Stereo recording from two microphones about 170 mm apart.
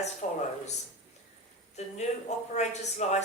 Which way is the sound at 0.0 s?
40° left (ahead or behind).